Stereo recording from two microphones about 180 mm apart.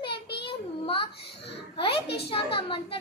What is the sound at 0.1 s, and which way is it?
Child singing, 65° left (ahead or behind).